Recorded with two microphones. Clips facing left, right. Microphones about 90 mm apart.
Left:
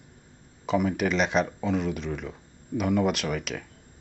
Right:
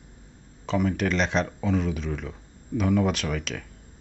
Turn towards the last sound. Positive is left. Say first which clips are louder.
# even
turn(degrees=5)  # may be behind; listen again after turning